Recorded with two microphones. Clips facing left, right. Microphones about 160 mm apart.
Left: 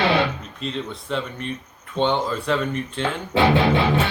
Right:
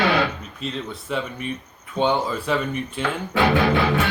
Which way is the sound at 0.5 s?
5° right (ahead or behind).